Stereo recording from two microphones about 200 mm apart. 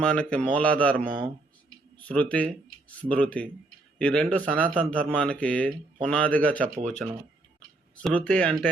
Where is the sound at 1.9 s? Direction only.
5° left (ahead or behind).